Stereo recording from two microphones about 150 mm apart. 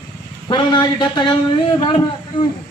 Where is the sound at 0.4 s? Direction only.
30° left (ahead or behind).